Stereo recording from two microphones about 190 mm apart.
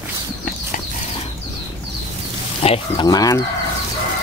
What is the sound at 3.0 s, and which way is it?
Speech, 20° left (ahead or behind).